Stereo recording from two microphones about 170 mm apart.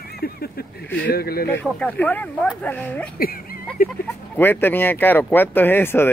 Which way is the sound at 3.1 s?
60° left (ahead or behind).